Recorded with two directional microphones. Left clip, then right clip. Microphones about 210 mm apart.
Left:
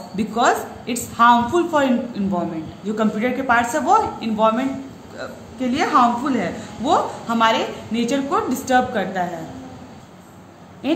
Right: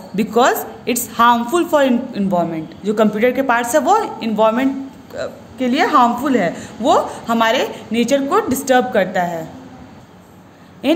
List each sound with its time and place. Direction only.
0.1 s a woman's voice: 45° right (ahead or behind)